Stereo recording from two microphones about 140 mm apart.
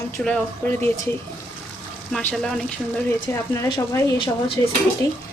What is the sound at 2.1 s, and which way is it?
Speech, 5° left (ahead or behind).